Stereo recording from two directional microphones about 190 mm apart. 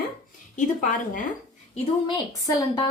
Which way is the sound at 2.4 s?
15° left (ahead or behind).